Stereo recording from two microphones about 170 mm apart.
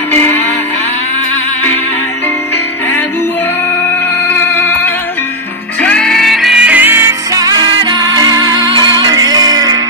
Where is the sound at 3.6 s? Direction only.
15° left (ahead or behind).